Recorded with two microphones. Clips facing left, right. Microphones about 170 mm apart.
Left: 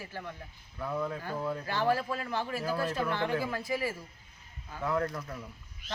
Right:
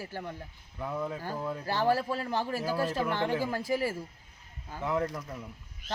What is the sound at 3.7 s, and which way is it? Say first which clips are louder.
Speech: right 4 dB; 40° right (ahead or behind).